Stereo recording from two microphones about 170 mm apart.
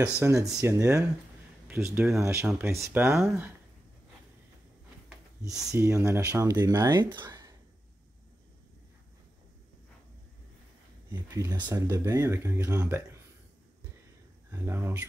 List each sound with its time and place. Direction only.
0.2 s speech: 20° right (ahead or behind)
5.7 s speech: 15° right (ahead or behind)
7.2 s a sound: 20° right (ahead or behind)
11.7 s speech: 20° right (ahead or behind)
14.5 s speech: 15° right (ahead or behind)